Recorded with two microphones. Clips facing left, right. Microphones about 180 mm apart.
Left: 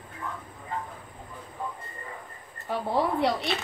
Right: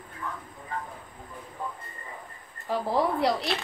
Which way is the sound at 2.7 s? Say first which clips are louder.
Right 1 dB; centre (ahead or behind).